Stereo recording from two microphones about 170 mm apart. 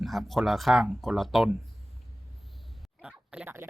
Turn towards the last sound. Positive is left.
turn(degrees=-10)  # may be behind; listen again after turning